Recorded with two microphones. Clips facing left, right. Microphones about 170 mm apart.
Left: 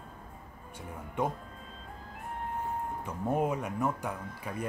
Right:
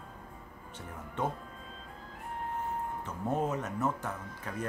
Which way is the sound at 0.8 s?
10° left (ahead or behind).